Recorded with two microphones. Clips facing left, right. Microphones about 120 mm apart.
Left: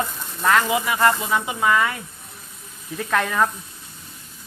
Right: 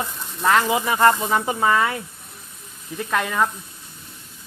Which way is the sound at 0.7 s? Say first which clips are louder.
Right 2 dB; 30° right (ahead or behind).